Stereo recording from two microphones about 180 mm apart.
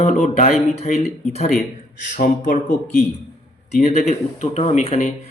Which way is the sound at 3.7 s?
40° left (ahead or behind).